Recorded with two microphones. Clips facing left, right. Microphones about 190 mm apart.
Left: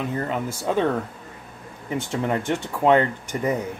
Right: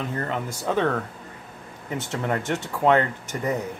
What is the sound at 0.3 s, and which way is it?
Speech, 10° left (ahead or behind).